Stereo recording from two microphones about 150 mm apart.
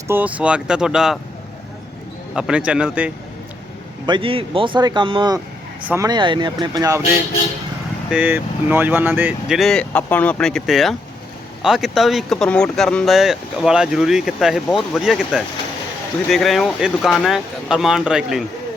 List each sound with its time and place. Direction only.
0.1 s speech: 10° right (ahead or behind)
2.3 s speech: 5° right (ahead or behind)
4.0 s speech: 35° right (ahead or behind)
5.8 s speech: 15° right (ahead or behind)
6.1 s speech: 30° right (ahead or behind)
8.1 s speech: 10° right (ahead or behind)
9.6 s speech: 5° left (ahead or behind)